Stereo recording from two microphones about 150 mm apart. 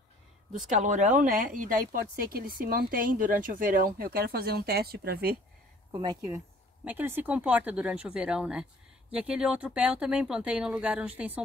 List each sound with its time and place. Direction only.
0.7 s a woman's voice: 60° right (ahead or behind); by 5.4 s 90° right
5.9 s speech: 25° right (ahead or behind)
6.8 s speech: 10° right (ahead or behind)